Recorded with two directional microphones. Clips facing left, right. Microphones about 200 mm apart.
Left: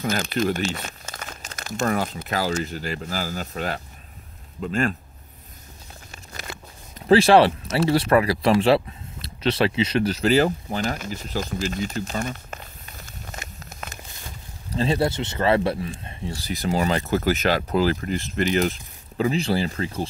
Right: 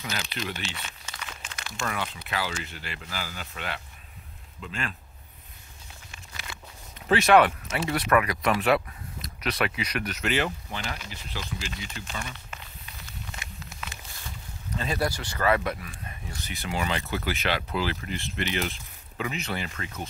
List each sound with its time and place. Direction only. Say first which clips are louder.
0.0 s speech: left 11 dB; 45° left (ahead or behind)
6.1 s a sound: left 6 dB; 40° left (ahead or behind)
7.1 s speech: left 5 dB; 30° left (ahead or behind)
14.7 s speech: left 7 dB; 30° left (ahead or behind)